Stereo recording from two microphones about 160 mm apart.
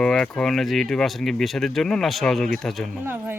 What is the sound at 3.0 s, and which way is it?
Speech, 10° right (ahead or behind).